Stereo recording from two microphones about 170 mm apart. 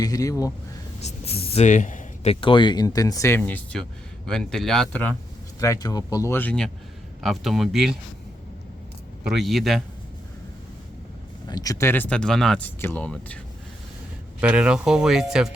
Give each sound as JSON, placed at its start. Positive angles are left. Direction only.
{"t": 0.0, "sound": "speech", "side_deg": 20}
{"t": 1.0, "sound": "speech", "side_deg": 35}
{"t": 5.5, "sound": "speech", "side_deg": 20}
{"t": 9.3, "sound": "speech", "side_deg": 0}
{"t": 11.4, "sound": "speech", "side_deg": 20}
{"t": 14.4, "sound": "speech", "side_deg": -5}